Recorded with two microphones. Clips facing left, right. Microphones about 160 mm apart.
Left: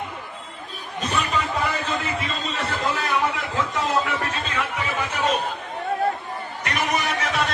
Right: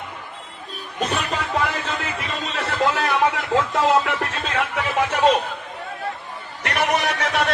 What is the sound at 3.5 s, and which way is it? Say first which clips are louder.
Music: right 7 dB; 80° right.